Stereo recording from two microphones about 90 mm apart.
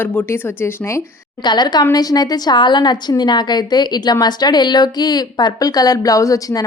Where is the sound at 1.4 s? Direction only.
55° left (ahead or behind).